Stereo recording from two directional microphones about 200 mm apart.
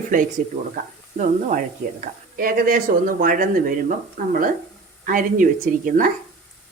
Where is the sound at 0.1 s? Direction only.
40° right (ahead or behind).